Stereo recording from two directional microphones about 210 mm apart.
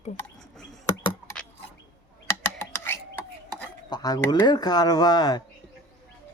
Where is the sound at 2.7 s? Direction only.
10° left (ahead or behind).